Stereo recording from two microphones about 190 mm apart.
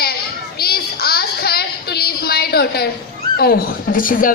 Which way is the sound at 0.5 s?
55° left (ahead or behind).